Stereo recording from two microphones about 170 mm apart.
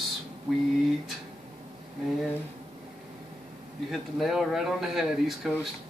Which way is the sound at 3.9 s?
Centre (ahead or behind).